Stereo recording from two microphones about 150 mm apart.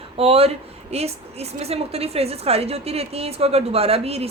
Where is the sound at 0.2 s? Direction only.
40° right (ahead or behind).